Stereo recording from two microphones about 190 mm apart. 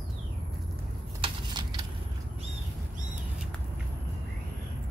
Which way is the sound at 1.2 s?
20° right (ahead or behind).